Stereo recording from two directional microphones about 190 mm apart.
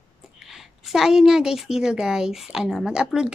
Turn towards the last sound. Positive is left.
turn(degrees=-5)  # may be behind; listen again after turning